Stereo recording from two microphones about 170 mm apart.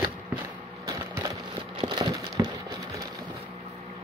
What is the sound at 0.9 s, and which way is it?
Splinter, 20° right (ahead or behind).